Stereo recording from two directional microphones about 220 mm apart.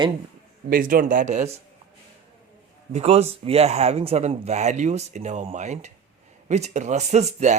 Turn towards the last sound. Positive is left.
turn(degrees=-30)  # may be behind; listen again after turning